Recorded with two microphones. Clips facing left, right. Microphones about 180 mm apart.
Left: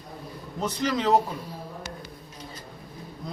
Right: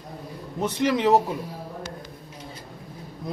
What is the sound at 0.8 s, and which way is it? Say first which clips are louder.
Speech: right 3 dB; 20° right (ahead or behind).